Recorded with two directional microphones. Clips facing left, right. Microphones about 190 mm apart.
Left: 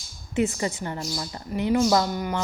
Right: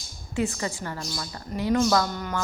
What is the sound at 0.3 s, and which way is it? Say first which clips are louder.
A woman's voice: left 3 dB; 20° left (ahead or behind).